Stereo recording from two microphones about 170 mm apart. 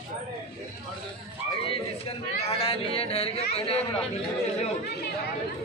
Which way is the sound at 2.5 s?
35° left (ahead or behind).